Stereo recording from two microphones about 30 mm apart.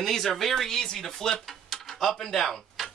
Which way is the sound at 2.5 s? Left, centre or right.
Centre.